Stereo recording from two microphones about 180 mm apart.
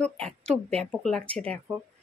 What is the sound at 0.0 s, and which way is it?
Speech, 5° left (ahead or behind).